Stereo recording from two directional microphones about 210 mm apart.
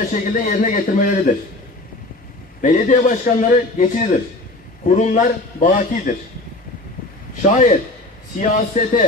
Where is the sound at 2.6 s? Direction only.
40° left (ahead or behind).